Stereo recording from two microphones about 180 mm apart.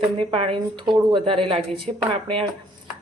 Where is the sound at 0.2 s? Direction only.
30° right (ahead or behind).